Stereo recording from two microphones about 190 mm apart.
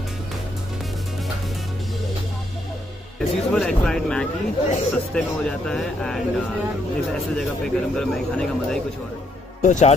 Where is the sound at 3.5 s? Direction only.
5° left (ahead or behind).